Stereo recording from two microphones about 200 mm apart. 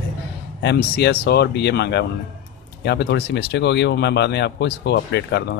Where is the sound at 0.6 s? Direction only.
55° left (ahead or behind).